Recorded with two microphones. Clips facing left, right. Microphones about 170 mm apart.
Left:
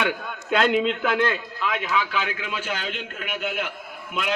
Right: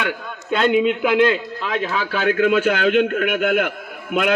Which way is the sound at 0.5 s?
Centre (ahead or behind).